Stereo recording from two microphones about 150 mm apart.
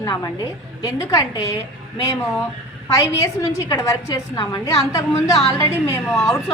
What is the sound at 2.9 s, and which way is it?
A woman's voice, 20° left (ahead or behind).